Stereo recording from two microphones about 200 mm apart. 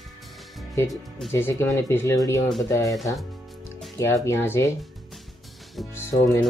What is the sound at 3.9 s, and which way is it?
Speech, 15° left (ahead or behind).